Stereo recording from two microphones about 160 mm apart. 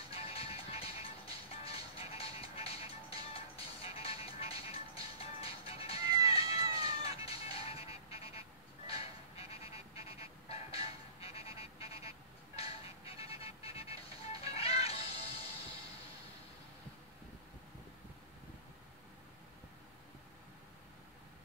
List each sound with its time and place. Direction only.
0.1 s music: 35° left (ahead or behind)
5.9 s music: 25° right (ahead or behind)
6.2 s cat: 40° left (ahead or behind)
14.5 s music: 40° left (ahead or behind)